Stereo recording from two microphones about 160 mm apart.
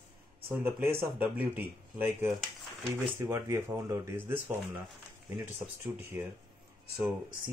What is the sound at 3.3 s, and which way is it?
Speech, 15° right (ahead or behind).